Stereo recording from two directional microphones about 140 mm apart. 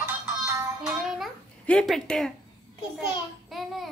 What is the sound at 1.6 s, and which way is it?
Speech, 5° left (ahead or behind).